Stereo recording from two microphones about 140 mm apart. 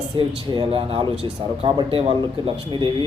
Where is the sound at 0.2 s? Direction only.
40° right (ahead or behind).